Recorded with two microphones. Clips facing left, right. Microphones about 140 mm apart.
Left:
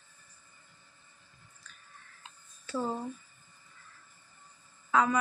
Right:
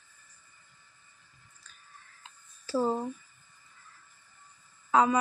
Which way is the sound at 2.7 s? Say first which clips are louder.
Right 5 dB; 35° right (ahead or behind).